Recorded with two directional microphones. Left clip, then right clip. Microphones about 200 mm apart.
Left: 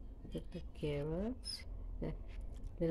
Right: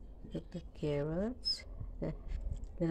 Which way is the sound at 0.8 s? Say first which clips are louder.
Right 4 dB; 15° right (ahead or behind).